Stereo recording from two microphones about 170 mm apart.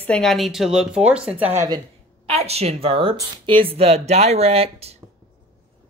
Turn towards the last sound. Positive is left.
turn(degrees=-35)  # may be behind; listen again after turning